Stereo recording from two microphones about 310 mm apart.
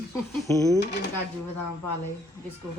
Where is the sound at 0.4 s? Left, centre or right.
Centre.